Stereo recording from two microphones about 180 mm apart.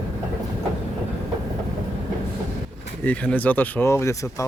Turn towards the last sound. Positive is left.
turn(degrees=15)  # may be behind; listen again after turning